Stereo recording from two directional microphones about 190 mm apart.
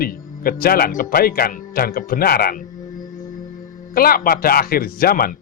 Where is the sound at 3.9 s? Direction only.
50° left (ahead or behind).